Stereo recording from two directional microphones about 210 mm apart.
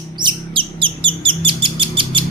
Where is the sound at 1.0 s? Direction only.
25° right (ahead or behind).